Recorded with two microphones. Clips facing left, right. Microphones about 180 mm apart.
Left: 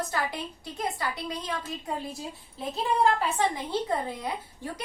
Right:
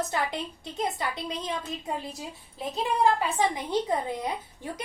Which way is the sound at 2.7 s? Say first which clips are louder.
Even; 15° right (ahead or behind).